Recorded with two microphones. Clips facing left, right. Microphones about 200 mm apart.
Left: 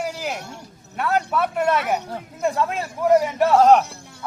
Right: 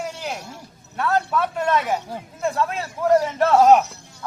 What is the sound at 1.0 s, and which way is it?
Speech, 10° left (ahead or behind).